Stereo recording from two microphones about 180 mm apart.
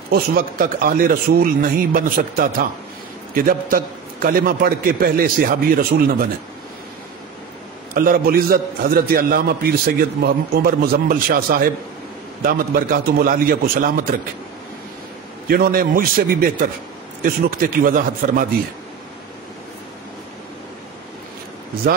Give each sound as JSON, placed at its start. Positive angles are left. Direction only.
{"t": 0.1, "sound": "a man's voice", "side_deg": -55}
{"t": 7.9, "sound": "a man's voice", "side_deg": -55}
{"t": 15.4, "sound": "a man's voice", "side_deg": -55}